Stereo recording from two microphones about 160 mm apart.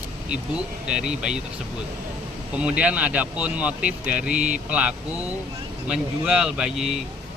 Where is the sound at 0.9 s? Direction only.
5° right (ahead or behind).